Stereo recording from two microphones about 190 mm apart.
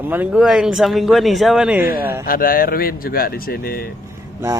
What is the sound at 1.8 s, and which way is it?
Speech, 50° left (ahead or behind).